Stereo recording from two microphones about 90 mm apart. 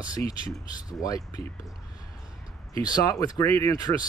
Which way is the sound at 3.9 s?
50° left (ahead or behind).